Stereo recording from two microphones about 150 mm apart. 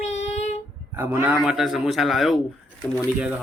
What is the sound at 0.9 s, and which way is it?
Speech, 15° right (ahead or behind).